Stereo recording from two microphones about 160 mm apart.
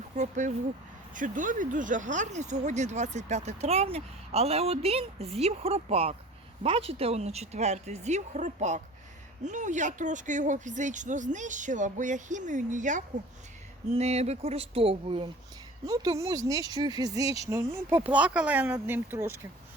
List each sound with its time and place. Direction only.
0.2 s speech: 50° right (ahead or behind)
15.9 s speech: 20° right (ahead or behind)